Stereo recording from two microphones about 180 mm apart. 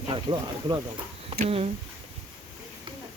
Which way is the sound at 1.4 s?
35° right (ahead or behind).